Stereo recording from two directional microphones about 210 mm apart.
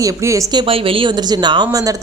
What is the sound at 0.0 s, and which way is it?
A woman's voice, 20° right (ahead or behind).